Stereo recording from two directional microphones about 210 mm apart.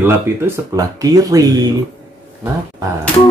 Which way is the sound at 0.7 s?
15° right (ahead or behind).